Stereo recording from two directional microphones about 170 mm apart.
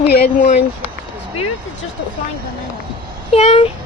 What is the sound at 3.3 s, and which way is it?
Speech, 35° left (ahead or behind).